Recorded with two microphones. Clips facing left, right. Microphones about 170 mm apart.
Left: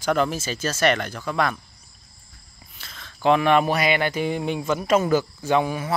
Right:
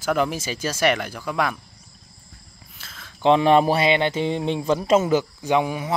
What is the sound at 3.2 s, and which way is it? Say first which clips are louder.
Speech: right 2 dB; 25° right (ahead or behind).